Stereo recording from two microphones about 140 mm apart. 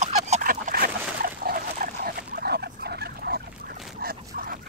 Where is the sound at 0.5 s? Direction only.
90° right.